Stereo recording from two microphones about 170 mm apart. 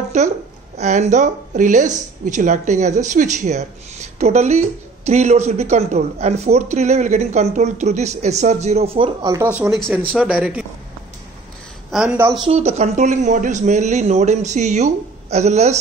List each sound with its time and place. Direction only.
0.1 s speech: 45° right (ahead or behind)
9.2 s speech: 15° right (ahead or behind)
11.9 s speech: 5° right (ahead or behind)
12.4 s speech: 40° right (ahead or behind)